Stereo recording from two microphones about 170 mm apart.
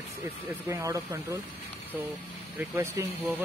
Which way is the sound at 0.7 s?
20° right (ahead or behind).